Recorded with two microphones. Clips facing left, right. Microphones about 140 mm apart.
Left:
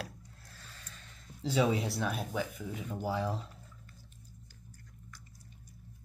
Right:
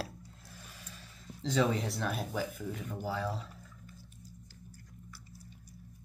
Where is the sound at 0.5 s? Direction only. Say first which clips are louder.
Right 2 dB; 15° right (ahead or behind).